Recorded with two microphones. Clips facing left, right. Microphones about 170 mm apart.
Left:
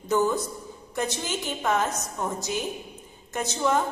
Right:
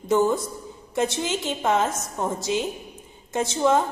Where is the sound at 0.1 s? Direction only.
20° right (ahead or behind).